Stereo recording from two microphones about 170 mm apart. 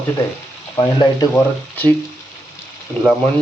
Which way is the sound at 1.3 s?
10° left (ahead or behind).